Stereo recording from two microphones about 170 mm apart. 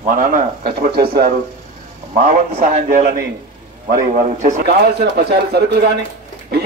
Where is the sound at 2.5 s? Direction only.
40° right (ahead or behind).